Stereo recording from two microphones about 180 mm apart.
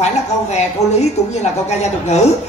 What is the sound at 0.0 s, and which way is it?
A woman's voice, 40° left (ahead or behind).